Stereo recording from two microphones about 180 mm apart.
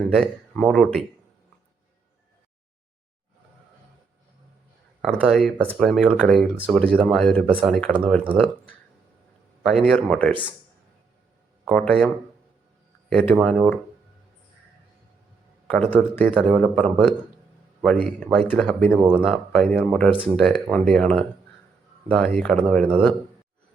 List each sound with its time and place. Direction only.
0.0 s speech: 5° left (ahead or behind)
5.0 s a man's voice: centre (ahead or behind)
9.6 s speech: centre (ahead or behind)
11.6 s speech: 5° left (ahead or behind)
15.6 s a man's voice: 5° left (ahead or behind)